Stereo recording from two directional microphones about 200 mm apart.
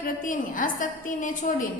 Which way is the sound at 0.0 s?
40° left (ahead or behind).